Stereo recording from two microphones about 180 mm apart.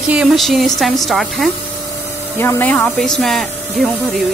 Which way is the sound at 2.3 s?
10° left (ahead or behind).